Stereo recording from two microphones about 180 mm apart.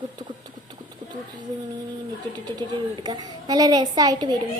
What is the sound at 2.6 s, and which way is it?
A woman's voice, 20° right (ahead or behind).